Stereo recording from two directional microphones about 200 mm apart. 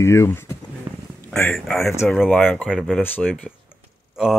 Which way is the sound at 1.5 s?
Centre (ahead or behind).